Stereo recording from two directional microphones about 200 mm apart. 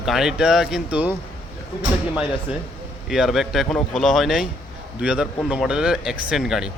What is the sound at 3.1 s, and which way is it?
A man's voice, centre (ahead or behind).